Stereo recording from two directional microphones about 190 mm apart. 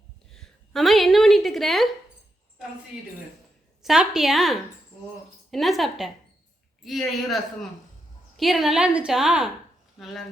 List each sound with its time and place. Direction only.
0.3 s a woman's voice: centre (ahead or behind)
3.8 s a woman's voice: centre (ahead or behind)